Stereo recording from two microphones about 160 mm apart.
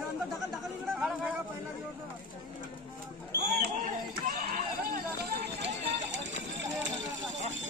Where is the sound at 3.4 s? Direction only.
60° right (ahead or behind).